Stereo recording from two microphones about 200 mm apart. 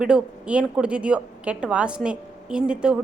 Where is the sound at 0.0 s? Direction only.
5° right (ahead or behind).